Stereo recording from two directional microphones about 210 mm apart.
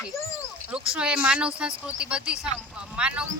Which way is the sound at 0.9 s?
5° right (ahead or behind).